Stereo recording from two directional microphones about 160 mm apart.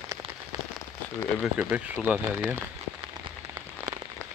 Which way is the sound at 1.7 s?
10° right (ahead or behind).